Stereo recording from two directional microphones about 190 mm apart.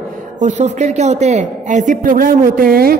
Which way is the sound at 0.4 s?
40° right (ahead or behind).